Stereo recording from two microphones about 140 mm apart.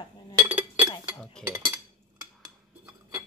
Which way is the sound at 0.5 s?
10° right (ahead or behind).